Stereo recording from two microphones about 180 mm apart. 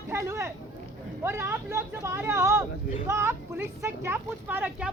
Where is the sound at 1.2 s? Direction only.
15° right (ahead or behind).